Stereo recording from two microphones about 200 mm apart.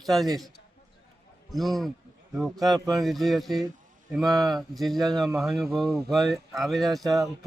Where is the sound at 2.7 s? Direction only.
20° right (ahead or behind).